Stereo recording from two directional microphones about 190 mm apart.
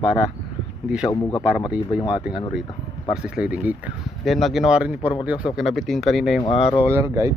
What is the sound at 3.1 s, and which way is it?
Speech, 5° right (ahead or behind).